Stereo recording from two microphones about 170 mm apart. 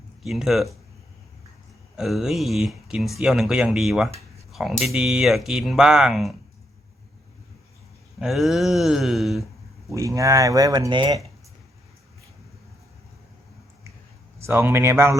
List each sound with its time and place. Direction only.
0.2 s speech: 5° right (ahead or behind)
2.0 s speech: centre (ahead or behind)
8.2 s speech: centre (ahead or behind)
9.9 s speech: 20° right (ahead or behind)
14.3 s speech: 15° right (ahead or behind)